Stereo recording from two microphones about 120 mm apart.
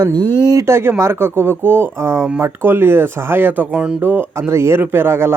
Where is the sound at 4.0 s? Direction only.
15° right (ahead or behind).